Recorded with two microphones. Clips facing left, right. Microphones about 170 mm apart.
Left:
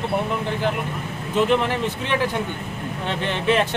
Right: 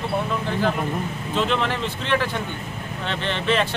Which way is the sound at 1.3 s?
10° left (ahead or behind).